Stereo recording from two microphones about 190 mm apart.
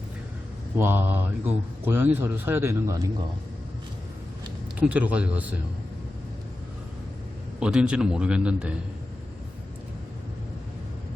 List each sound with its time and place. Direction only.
0.8 s a man's voice: 10° right (ahead or behind)
4.8 s a man's voice: 10° right (ahead or behind)
7.6 s a man's voice: 5° right (ahead or behind)